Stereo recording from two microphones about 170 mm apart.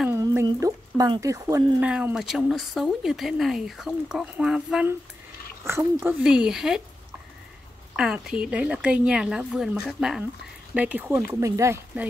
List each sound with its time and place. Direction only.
0.1 s speech: 15° right (ahead or behind)
1.8 s speech: 10° right (ahead or behind)
5.7 s speech: 15° right (ahead or behind)
7.9 s speech: 5° right (ahead or behind)